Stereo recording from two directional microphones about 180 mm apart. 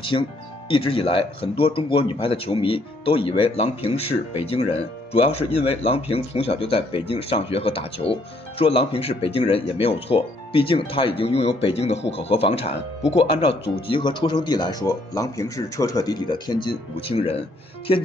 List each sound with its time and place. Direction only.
0.7 s speech: 30° left (ahead or behind)